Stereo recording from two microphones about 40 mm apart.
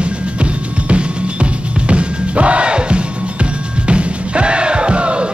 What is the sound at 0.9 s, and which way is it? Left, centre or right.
Music, right.